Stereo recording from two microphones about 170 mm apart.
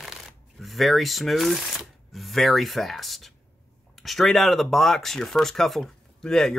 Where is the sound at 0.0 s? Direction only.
Centre (ahead or behind).